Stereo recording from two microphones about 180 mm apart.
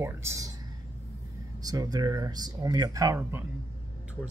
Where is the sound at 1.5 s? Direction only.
20° right (ahead or behind).